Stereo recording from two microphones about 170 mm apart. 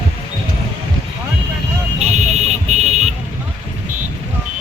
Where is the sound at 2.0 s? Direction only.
40° right (ahead or behind).